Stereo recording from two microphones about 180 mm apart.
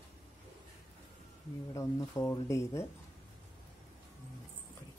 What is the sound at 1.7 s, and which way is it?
Speech, 20° left (ahead or behind).